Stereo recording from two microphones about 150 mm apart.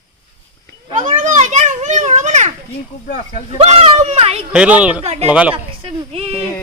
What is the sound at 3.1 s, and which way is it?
Speech, 65° left (ahead or behind).